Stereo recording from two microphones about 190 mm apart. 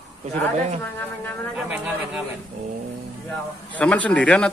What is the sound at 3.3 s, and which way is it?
A man's voice, 5° left (ahead or behind).